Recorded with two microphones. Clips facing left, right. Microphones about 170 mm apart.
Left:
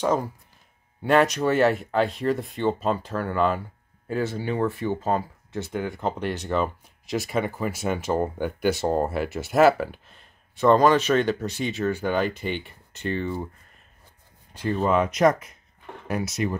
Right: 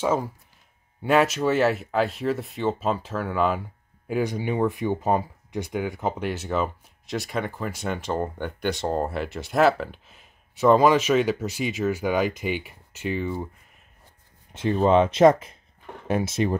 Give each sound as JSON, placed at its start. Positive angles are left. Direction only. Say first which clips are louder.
{"t": 0.0, "sound": "speech", "louder": "even", "side_deg": -5}
{"t": 10.1, "sound": "speech", "louder": "even", "side_deg": -5}
{"t": 14.5, "sound": "speech", "louder": "right 3 dB", "side_deg": -25}